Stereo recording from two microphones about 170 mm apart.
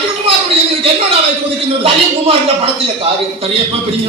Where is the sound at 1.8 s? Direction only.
35° right (ahead or behind).